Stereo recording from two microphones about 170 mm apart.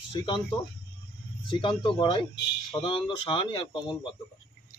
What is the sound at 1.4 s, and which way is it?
Speech, 30° left (ahead or behind).